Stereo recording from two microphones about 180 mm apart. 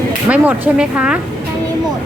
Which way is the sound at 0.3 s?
10° right (ahead or behind).